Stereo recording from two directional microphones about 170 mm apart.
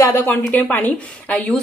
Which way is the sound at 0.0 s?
15° left (ahead or behind).